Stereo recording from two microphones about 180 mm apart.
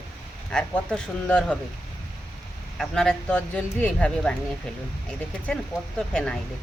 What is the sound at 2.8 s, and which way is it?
Speech, 5° left (ahead or behind).